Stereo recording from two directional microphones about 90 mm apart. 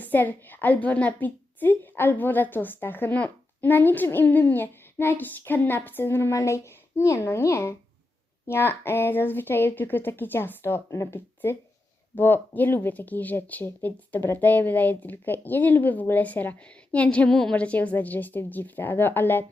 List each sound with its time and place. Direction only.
0.0 s a woman's voice: 20° left (ahead or behind)